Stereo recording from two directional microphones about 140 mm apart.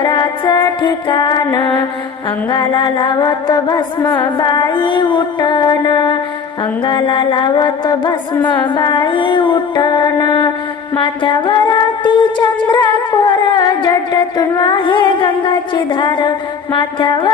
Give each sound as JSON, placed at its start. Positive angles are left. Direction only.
{"t": 0.0, "sound": "music", "side_deg": 30}
{"t": 2.5, "sound": "singing", "side_deg": 35}
{"t": 4.4, "sound": "music", "side_deg": 30}
{"t": 4.7, "sound": "singing", "side_deg": 35}